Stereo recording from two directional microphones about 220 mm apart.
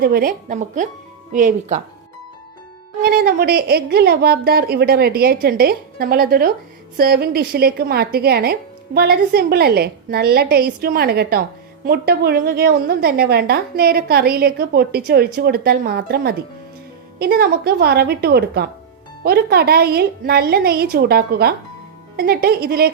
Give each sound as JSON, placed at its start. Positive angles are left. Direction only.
{"t": 0.0, "sound": "a woman's voice", "side_deg": -40}
{"t": 3.0, "sound": "a woman's voice", "side_deg": -45}